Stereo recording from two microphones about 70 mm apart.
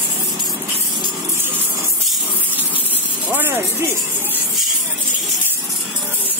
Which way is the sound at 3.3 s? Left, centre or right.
Right.